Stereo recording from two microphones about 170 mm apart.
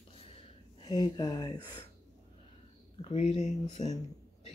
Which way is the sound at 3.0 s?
35° left (ahead or behind).